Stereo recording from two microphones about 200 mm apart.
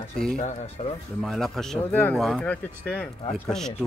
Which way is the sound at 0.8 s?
30° left (ahead or behind).